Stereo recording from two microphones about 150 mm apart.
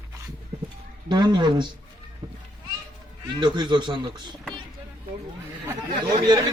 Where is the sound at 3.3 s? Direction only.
30° right (ahead or behind).